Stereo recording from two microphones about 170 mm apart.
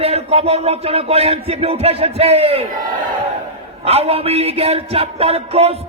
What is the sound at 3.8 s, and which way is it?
A man's voice, 35° right (ahead or behind).